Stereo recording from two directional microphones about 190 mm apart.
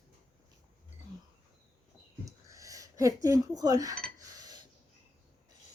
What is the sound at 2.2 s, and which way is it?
Cutlery, 15° right (ahead or behind).